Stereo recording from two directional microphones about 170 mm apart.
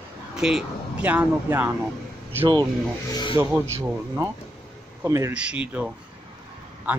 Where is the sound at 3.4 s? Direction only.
15° right (ahead or behind).